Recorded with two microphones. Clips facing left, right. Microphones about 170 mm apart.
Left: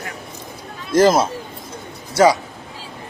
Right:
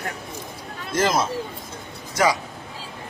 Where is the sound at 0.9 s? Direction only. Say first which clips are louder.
Left 8 dB; 35° left (ahead or behind).